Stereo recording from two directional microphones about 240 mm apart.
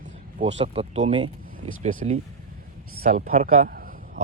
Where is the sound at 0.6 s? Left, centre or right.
Right.